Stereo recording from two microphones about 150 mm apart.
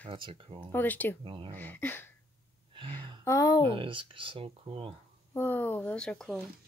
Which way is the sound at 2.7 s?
35° right (ahead or behind).